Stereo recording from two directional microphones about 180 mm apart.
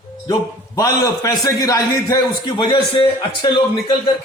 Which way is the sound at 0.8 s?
20° left (ahead or behind).